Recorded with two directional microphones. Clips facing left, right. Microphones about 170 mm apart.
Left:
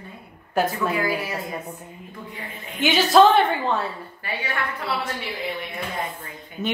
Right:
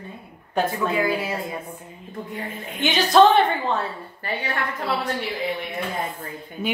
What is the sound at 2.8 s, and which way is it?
A woman's voice, 5° left (ahead or behind).